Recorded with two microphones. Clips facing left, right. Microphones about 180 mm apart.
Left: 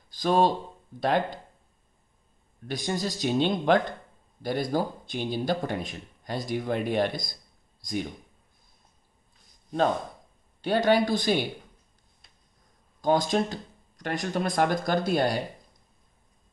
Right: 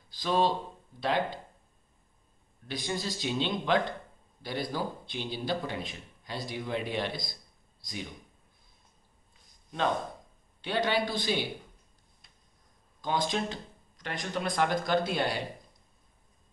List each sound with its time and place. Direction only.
0.1 s speech: 50° left (ahead or behind)
2.7 s a man's voice: 45° left (ahead or behind)
10.6 s a man's voice: 40° left (ahead or behind)
13.0 s a man's voice: 40° left (ahead or behind)